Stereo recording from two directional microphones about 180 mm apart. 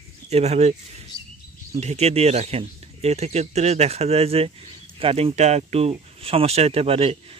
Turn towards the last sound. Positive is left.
turn(degrees=-35)  # may be behind; listen again after turning